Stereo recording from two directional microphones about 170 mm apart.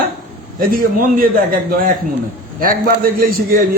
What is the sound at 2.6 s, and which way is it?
Speech, 55° right (ahead or behind).